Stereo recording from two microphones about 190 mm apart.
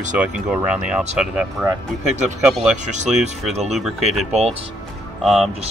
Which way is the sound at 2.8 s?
40° right (ahead or behind).